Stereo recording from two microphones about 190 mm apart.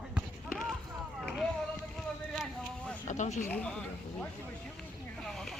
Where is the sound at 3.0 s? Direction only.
40° left (ahead or behind).